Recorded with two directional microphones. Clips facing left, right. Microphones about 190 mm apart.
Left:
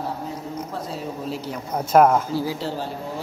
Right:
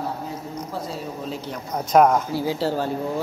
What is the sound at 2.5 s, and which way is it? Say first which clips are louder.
Speech: right 5 dB; 45° right (ahead or behind).